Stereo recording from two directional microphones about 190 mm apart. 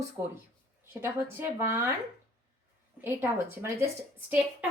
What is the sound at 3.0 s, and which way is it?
Speech, 15° right (ahead or behind).